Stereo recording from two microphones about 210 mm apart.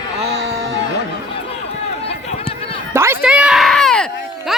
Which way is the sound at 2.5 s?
25° left (ahead or behind).